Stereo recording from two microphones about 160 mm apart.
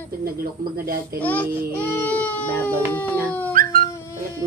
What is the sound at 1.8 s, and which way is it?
Speech, 10° left (ahead or behind).